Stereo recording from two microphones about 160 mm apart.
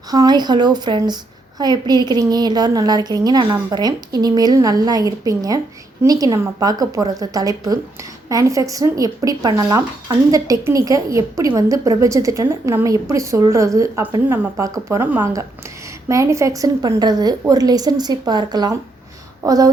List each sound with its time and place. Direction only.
0.1 s a woman's voice: 25° right (ahead or behind)